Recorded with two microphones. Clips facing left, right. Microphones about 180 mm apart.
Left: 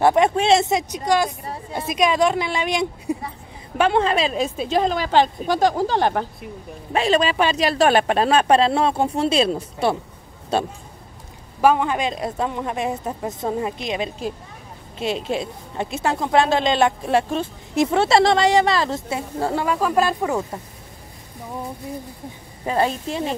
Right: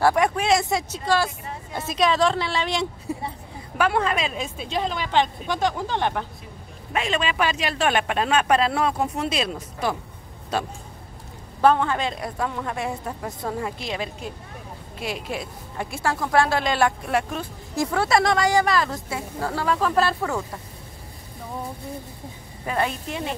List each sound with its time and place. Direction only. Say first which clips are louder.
0.0 s a woman's voice: left 4 dB; 25° left (ahead or behind)
11.6 s a woman's voice: left 2 dB; 15° left (ahead or behind)
19.6 s speech: even; 10° left (ahead or behind)
22.7 s speech: left 4 dB; 30° left (ahead or behind)